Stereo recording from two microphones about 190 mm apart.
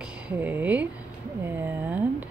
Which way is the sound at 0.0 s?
10° right (ahead or behind).